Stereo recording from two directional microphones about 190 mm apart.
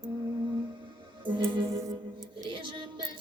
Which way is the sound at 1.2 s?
25° right (ahead or behind).